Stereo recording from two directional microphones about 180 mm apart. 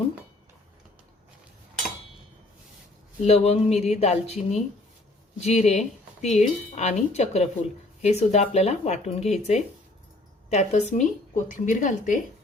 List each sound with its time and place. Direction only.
3.2 s a woman's voice: 35° left (ahead or behind)